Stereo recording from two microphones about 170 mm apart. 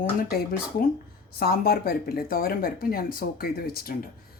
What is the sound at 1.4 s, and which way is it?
Speech, 65° left (ahead or behind).